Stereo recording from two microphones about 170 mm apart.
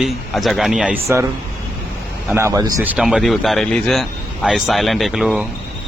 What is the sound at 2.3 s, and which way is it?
Speech, 15° right (ahead or behind).